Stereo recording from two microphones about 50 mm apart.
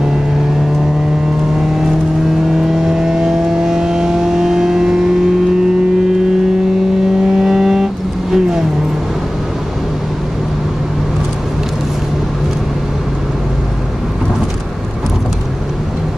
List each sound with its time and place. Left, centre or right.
2.7 s vehicle: centre
7.3 s vehicle: centre